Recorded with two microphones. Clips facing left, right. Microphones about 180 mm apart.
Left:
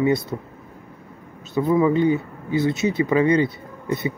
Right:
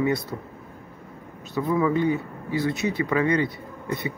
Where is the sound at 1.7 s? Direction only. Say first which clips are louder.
Left 4 dB; 25° left (ahead or behind).